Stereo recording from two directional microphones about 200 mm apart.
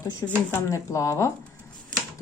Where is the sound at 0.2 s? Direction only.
10° left (ahead or behind).